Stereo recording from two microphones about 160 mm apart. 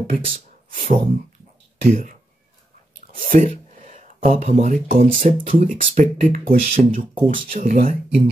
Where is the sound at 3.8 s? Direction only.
55° right (ahead or behind).